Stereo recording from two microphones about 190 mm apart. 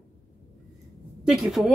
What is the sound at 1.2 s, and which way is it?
Speech, centre (ahead or behind).